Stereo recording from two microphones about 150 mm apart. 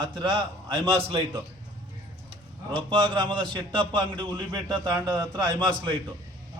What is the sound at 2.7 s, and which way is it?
Speech, 30° right (ahead or behind).